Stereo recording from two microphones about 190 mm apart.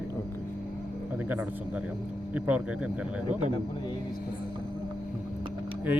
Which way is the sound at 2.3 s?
10° right (ahead or behind).